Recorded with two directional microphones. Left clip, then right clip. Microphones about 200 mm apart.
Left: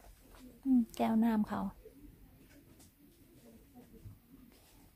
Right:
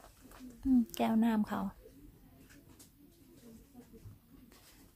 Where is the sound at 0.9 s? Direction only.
Centre (ahead or behind).